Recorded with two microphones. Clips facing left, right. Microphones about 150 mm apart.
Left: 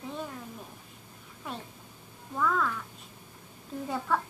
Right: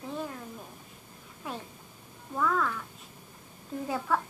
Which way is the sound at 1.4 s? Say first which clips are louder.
Right 1 dB; centre (ahead or behind).